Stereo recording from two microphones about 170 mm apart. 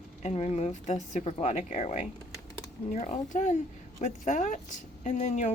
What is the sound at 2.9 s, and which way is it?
Speech, 45° left (ahead or behind).